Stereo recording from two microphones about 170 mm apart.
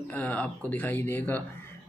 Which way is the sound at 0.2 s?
10° left (ahead or behind).